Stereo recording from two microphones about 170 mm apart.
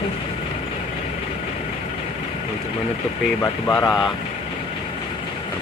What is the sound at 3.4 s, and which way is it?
Speech, 20° left (ahead or behind).